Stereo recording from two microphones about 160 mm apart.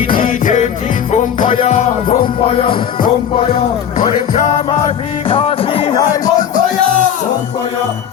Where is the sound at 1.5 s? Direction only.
40° left (ahead or behind).